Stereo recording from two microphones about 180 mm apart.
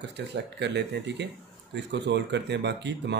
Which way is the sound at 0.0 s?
75° right (ahead or behind).